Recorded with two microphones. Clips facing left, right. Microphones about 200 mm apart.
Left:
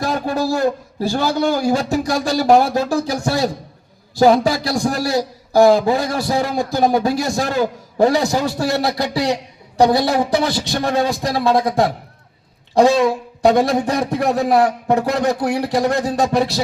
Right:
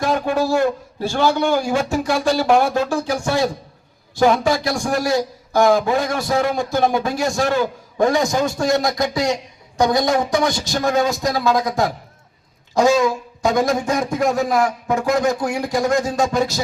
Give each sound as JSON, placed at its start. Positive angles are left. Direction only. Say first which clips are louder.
{"t": 0.0, "sound": "a man's voice", "louder": "right 1 dB", "side_deg": 35}